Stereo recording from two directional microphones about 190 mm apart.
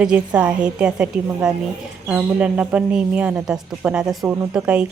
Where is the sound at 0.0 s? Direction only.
5° right (ahead or behind).